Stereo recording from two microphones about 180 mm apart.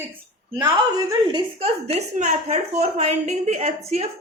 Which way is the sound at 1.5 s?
35° right (ahead or behind).